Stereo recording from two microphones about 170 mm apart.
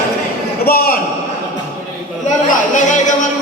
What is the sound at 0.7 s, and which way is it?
Speech, 60° left (ahead or behind).